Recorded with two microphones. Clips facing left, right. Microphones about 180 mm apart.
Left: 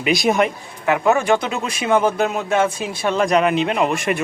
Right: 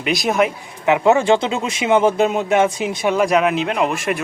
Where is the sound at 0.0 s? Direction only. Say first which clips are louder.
Left 1 dB; centre (ahead or behind).